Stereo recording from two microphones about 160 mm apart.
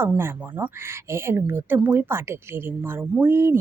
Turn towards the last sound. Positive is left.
turn(degrees=-15)  # may be behind; listen again after turning